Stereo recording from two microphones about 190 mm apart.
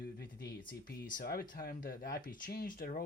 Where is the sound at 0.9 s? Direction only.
50° left (ahead or behind).